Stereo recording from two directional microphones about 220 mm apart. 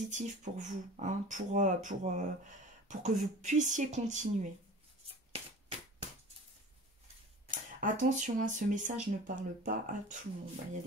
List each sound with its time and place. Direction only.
0.1 s speech: 35° right (ahead or behind)
5.0 s a sound: 25° right (ahead or behind)
7.5 s speech: 35° right (ahead or behind)